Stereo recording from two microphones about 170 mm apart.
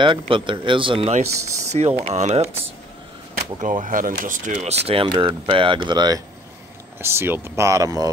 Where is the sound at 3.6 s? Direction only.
50° right (ahead or behind); by 8.0 s 20° right (ahead or behind).